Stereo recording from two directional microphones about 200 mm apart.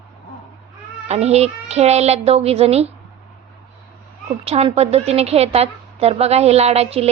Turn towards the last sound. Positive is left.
turn(degrees=-30)  # may be behind; listen again after turning